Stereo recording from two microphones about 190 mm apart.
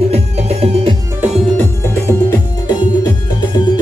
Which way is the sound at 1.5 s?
10° left (ahead or behind).